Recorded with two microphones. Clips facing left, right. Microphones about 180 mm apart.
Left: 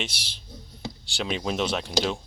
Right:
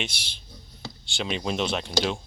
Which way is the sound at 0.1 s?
35° left (ahead or behind).